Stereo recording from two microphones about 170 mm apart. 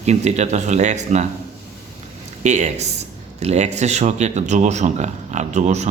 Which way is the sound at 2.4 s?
45° right (ahead or behind).